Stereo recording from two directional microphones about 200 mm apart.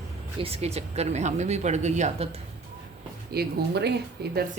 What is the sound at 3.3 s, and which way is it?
Speech, 50° right (ahead or behind).